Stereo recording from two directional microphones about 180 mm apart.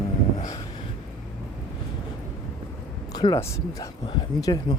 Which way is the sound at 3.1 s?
20° left (ahead or behind).